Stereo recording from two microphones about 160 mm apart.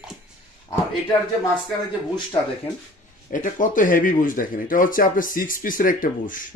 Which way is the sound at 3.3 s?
55° left (ahead or behind).